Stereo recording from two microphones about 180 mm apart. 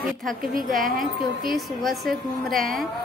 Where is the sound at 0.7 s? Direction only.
50° right (ahead or behind).